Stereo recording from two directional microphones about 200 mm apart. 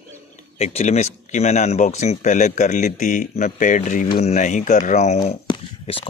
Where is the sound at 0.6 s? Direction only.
30° left (ahead or behind).